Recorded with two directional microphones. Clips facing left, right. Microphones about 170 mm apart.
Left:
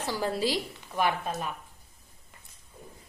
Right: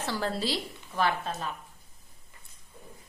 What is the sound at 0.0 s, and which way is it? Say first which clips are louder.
A woman's voice: left 2 dB; 10° left (ahead or behind).